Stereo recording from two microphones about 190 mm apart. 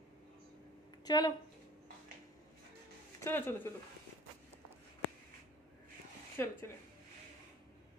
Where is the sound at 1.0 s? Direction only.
20° left (ahead or behind).